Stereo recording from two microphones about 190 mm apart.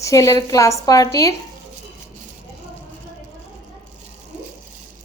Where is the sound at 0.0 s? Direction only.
15° left (ahead or behind).